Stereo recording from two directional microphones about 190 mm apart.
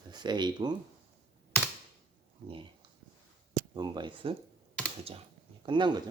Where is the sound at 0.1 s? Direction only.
20° right (ahead or behind).